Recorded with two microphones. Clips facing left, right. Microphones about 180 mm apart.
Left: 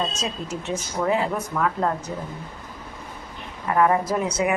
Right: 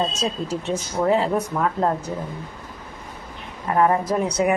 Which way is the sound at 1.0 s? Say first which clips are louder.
Right 4 dB; 30° right (ahead or behind).